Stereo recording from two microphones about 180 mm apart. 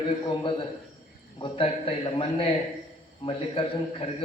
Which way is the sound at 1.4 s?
30° left (ahead or behind).